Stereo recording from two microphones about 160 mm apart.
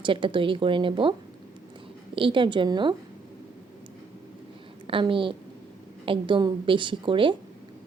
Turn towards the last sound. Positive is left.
turn(degrees=-30)  # may be behind; listen again after turning